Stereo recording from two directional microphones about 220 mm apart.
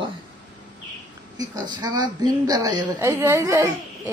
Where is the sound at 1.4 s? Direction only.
20° right (ahead or behind).